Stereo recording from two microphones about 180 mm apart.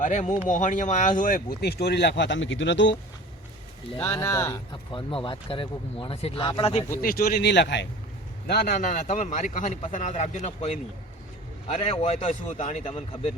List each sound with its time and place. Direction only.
0.0 s speech: 45° left (ahead or behind); by 2.9 s 90° left
3.9 s speech: 15° left (ahead or behind)
4.9 s speech: 30° left (ahead or behind)
6.9 s speech: 55° left (ahead or behind); by 7.9 s 80° left
8.4 s speech: 55° left (ahead or behind); by 10.8 s 35° left (ahead or behind)
11.8 s a man's voice: 35° left (ahead or behind)